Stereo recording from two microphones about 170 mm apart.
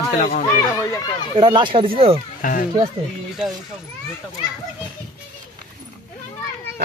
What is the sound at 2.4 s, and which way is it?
Speech, 50° left (ahead or behind).